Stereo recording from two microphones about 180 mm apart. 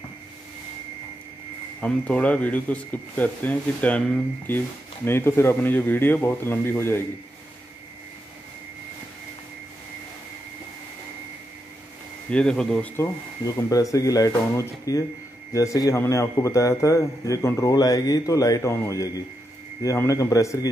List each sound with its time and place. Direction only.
1.8 s speech: 5° left (ahead or behind)
12.3 s a man's voice: 5° left (ahead or behind)